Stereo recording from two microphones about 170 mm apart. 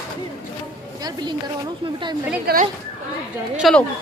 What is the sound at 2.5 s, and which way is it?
Speech, 65° right (ahead or behind).